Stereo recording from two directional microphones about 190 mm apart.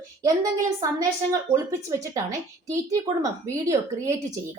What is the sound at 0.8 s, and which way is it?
A woman's voice, 15° right (ahead or behind).